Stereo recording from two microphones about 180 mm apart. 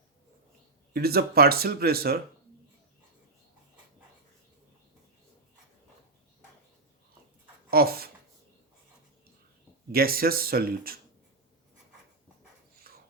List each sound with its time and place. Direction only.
0.9 s speech: 60° right (ahead or behind)
7.7 s speech: 55° right (ahead or behind)
9.9 s speech: 55° right (ahead or behind)
12.9 s dog: 55° right (ahead or behind)